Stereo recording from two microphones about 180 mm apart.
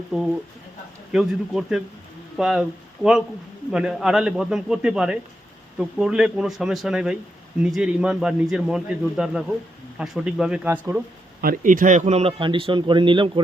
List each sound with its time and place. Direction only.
1.1 s a man's voice: 5° right (ahead or behind)
11.3 s a man's voice: 55° right (ahead or behind); by 13.4 s 25° right (ahead or behind)